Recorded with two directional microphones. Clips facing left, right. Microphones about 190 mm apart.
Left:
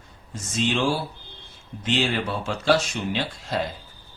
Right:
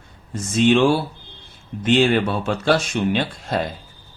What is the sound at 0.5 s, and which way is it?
Speech, 60° right (ahead or behind).